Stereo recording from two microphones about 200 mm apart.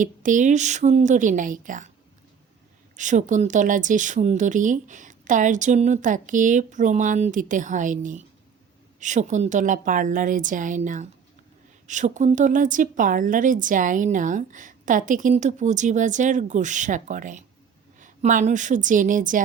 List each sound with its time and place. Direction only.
0.0 s a woman's voice: 40° right (ahead or behind)
2.9 s a woman's voice: 40° right (ahead or behind)